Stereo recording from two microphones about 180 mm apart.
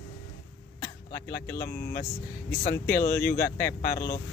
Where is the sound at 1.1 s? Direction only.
60° left (ahead or behind).